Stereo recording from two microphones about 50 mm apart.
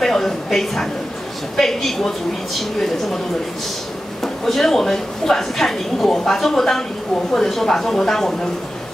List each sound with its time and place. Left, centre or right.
0.0 s a sound: centre
1.6 s a woman's voice: centre
4.2 s a woman's voice: centre